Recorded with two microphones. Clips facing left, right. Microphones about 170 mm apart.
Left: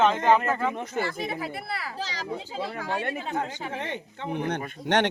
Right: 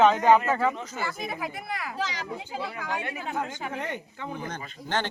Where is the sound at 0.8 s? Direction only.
55° left (ahead or behind).